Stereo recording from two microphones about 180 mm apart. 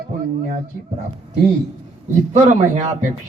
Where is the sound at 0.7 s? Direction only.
50° right (ahead or behind).